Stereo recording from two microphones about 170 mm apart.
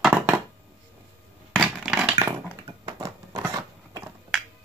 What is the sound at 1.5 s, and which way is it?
Crushing, 5° right (ahead or behind).